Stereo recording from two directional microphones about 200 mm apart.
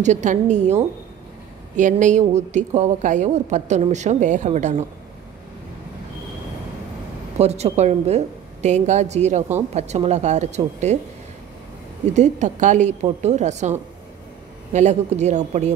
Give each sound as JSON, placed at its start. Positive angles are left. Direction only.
{"t": 0.0, "sound": "a woman's voice", "side_deg": -35}
{"t": 7.3, "sound": "a woman's voice", "side_deg": -30}
{"t": 12.1, "sound": "a woman's voice", "side_deg": -35}